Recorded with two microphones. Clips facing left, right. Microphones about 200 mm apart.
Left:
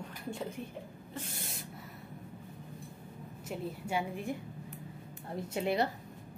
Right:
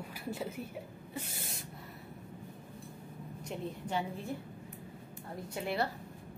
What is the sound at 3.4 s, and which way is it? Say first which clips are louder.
Speech: left 1 dB; 5° left (ahead or behind).